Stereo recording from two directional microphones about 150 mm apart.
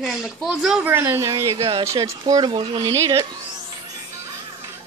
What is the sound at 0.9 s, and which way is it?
Speech, 15° right (ahead or behind).